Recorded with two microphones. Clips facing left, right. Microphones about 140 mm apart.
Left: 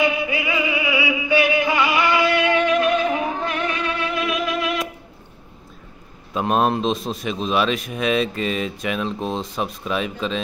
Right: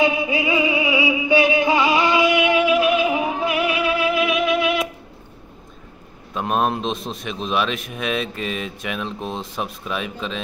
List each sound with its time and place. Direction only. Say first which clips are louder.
0.0 s music: right 2 dB; 20° right (ahead or behind); by 4.8 s centre (ahead or behind)
6.3 s a man's voice: left 2 dB; centre (ahead or behind)